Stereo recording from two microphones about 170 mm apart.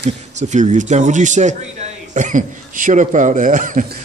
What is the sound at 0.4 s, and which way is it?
A man's voice, 45° right (ahead or behind).